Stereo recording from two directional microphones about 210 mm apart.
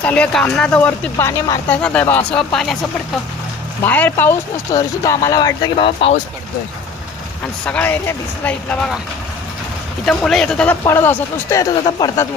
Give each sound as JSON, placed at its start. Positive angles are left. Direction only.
{"t": 0.0, "sound": "speech", "side_deg": 5}
{"t": 3.8, "sound": "speech", "side_deg": 10}
{"t": 7.6, "sound": "speech", "side_deg": 5}
{"t": 10.1, "sound": "speech", "side_deg": 0}